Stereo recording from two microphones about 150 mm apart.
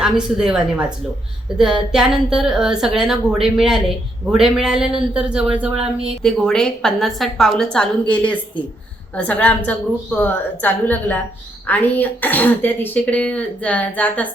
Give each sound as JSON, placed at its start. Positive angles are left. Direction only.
{"t": 0.0, "sound": "a woman's voice", "side_deg": -5}